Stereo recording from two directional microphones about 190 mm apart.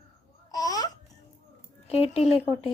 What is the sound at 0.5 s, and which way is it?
Babbling, 20° left (ahead or behind).